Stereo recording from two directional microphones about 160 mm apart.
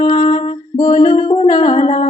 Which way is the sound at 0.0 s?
40° left (ahead or behind).